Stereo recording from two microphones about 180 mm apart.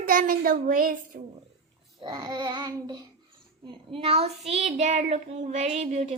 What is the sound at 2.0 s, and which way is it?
Speech, 25° right (ahead or behind).